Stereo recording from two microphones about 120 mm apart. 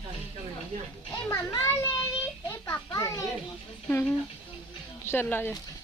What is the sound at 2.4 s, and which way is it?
Speech, 25° left (ahead or behind).